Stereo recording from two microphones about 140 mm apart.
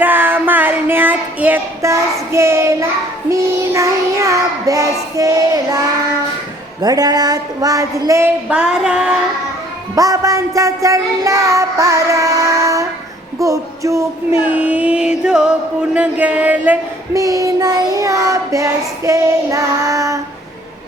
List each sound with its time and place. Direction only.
0.0 s child singing: 15° right (ahead or behind)
6.8 s child singing: 25° right (ahead or behind)
8.4 s music: 5° right (ahead or behind)
9.9 s child singing: 25° right (ahead or behind)
14.5 s music: 10° right (ahead or behind)
17.2 s child singing: 25° right (ahead or behind)